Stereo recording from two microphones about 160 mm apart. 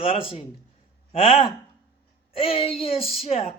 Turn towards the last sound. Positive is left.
turn(degrees=40)  # may be behind; listen again after turning